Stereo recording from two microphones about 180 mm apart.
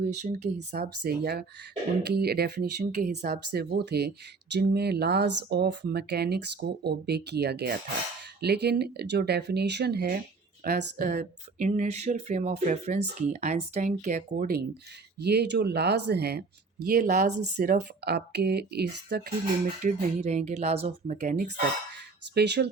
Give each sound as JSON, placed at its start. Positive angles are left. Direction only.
{"t": 0.0, "sound": "speech", "side_deg": -40}
{"t": 0.7, "sound": "speech", "side_deg": -60}
{"t": 11.8, "sound": "speech", "side_deg": -40}
{"t": 15.2, "sound": "speech", "side_deg": -65}
{"t": 19.8, "sound": "speech", "side_deg": -40}
{"t": 22.4, "sound": "speech", "side_deg": -65}